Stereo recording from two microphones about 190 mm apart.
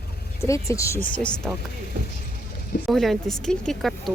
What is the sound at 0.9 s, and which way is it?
Speech, 45° left (ahead or behind).